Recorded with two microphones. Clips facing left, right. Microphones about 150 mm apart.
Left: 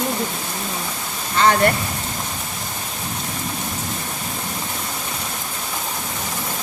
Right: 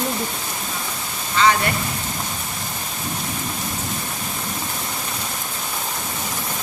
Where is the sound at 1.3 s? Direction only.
50° left (ahead or behind).